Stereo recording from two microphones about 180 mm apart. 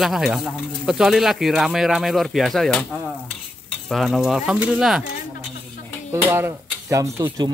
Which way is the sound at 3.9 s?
Centre (ahead or behind).